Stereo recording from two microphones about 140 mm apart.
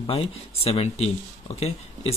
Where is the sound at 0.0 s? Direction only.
40° left (ahead or behind).